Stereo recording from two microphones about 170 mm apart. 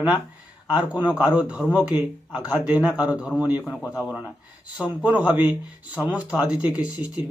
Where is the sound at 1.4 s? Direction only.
5° right (ahead or behind).